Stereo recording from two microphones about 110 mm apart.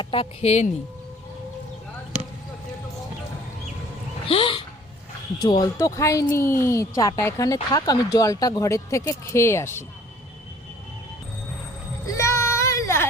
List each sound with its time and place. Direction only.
0.0 s speech: 50° left (ahead or behind); by 0.7 s 70° left (ahead or behind)
4.3 s speech: 55° left (ahead or behind)
5.4 s speech: 40° left (ahead or behind)
6.0 s speech: 30° left (ahead or behind)
12.0 s child singing: 25° left (ahead or behind)